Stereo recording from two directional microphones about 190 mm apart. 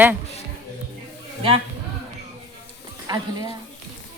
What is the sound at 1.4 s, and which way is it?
Speech, 30° right (ahead or behind).